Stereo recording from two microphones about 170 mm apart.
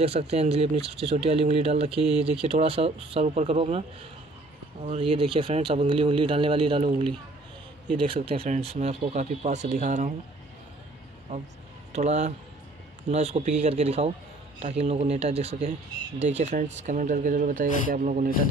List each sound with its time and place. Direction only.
0.0 s speech: 35° right (ahead or behind)
4.8 s speech: 35° right (ahead or behind)
11.9 s speech: 40° right (ahead or behind)